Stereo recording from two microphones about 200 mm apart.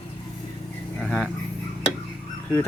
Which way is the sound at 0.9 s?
5° right (ahead or behind).